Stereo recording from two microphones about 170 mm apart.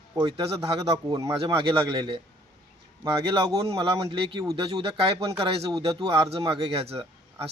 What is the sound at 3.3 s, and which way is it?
Speech, 30° right (ahead or behind).